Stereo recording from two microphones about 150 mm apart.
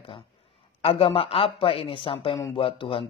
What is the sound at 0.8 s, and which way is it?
Speech, 40° left (ahead or behind).